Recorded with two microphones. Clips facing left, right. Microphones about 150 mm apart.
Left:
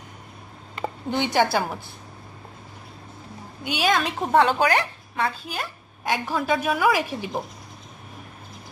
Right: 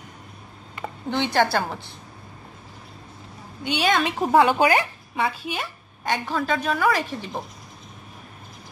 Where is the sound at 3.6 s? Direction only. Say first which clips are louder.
Right 1 dB; centre (ahead or behind).